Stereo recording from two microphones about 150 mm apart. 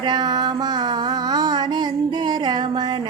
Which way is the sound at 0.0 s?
30° right (ahead or behind).